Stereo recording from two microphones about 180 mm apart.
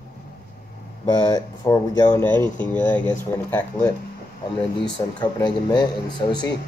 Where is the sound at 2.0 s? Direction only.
10° left (ahead or behind).